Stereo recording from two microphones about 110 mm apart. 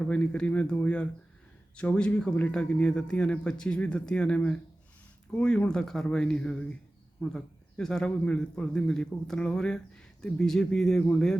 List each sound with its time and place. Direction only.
0.0 s a man's voice: 10° left (ahead or behind)